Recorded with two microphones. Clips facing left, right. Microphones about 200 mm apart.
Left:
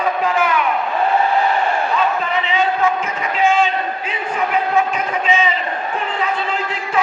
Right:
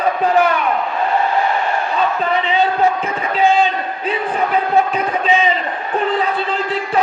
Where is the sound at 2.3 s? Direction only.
35° right (ahead or behind).